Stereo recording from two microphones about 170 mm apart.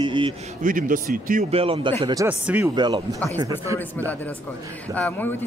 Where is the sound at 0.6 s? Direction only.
50° right (ahead or behind).